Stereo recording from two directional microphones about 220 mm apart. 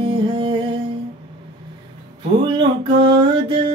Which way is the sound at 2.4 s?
20° right (ahead or behind).